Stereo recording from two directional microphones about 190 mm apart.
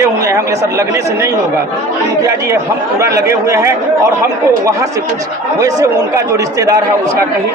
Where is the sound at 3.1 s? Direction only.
15° right (ahead or behind).